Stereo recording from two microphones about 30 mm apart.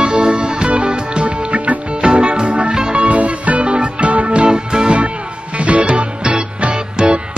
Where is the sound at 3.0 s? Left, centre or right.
Right.